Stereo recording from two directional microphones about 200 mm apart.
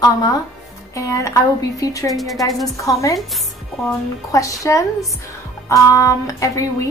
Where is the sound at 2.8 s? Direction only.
15° left (ahead or behind).